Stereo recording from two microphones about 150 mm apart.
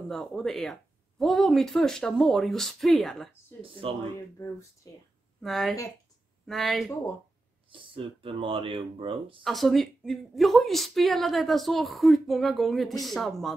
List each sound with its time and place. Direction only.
0.1 s a woman's voice: 5° left (ahead or behind)
3.8 s speech: 40° right (ahead or behind)
5.4 s a woman's voice: centre (ahead or behind)
7.7 s speech: 35° right (ahead or behind)
9.4 s a woman's voice: centre (ahead or behind)